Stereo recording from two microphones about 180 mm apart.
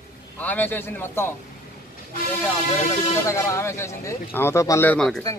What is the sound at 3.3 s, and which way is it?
Speech, 15° left (ahead or behind).